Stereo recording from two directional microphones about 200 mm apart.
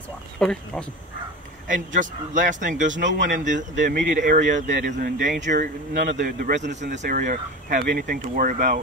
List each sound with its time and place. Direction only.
0.4 s speech: 5° left (ahead or behind)
1.7 s speech: 40° right (ahead or behind)